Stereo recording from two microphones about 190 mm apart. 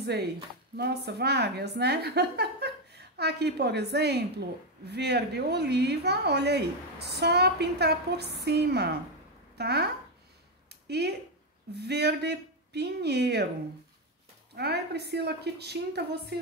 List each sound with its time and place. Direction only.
0.7 s a woman's voice: 60° right (ahead or behind)
10.7 s a sound: 60° right (ahead or behind)
11.7 s a woman's voice: 60° right (ahead or behind)
14.5 s a woman's voice: 60° right (ahead or behind)